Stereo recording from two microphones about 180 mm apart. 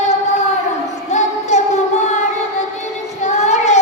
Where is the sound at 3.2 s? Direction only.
40° left (ahead or behind).